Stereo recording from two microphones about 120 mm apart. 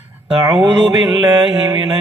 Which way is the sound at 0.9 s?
35° right (ahead or behind).